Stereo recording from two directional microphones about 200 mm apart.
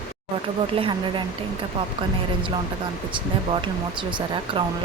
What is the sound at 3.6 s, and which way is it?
Speech, 25° right (ahead or behind).